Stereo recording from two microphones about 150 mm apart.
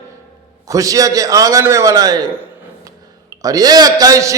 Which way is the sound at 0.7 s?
20° right (ahead or behind).